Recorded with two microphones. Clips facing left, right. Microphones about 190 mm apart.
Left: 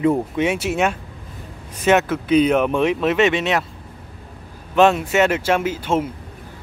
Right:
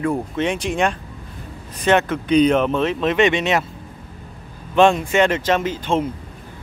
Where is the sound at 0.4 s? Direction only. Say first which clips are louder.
Left 1 dB; 5° left (ahead or behind).